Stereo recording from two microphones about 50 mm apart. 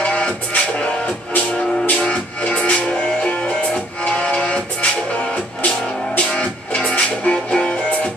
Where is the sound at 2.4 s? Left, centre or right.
Left.